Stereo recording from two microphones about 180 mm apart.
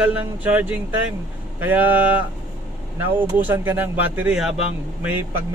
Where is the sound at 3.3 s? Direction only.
10° right (ahead or behind).